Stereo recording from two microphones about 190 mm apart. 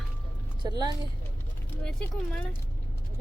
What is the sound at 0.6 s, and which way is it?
Speech, 20° right (ahead or behind).